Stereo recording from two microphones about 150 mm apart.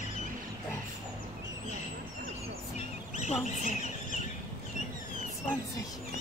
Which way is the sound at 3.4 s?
50° left (ahead or behind).